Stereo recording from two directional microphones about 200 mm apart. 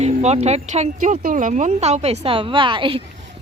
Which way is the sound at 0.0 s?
35° right (ahead or behind).